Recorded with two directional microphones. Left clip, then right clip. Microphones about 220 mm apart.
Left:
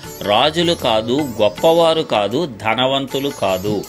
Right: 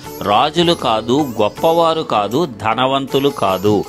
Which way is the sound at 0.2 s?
15° right (ahead or behind).